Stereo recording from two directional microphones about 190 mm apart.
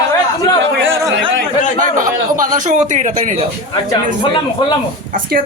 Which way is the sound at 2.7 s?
40° right (ahead or behind).